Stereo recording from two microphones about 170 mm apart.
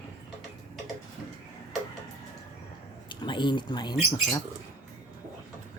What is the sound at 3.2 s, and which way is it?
Speech, 25° left (ahead or behind).